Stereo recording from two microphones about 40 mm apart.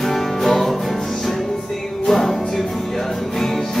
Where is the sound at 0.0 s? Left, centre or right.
Centre.